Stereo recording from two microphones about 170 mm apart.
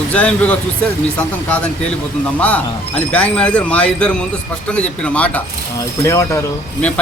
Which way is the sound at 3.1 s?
10° left (ahead or behind).